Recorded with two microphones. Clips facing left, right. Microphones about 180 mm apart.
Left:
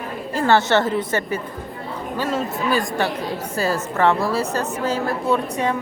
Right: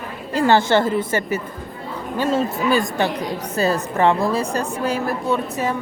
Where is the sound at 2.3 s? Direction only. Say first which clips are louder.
Right 3 dB; 25° right (ahead or behind).